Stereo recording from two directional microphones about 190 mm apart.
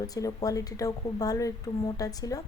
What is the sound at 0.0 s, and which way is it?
Speech, 20° left (ahead or behind).